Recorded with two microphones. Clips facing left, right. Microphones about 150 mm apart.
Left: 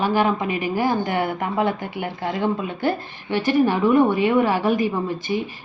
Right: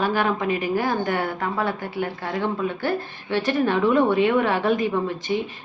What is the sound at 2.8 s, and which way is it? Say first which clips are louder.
Speech: left 2 dB; 15° left (ahead or behind).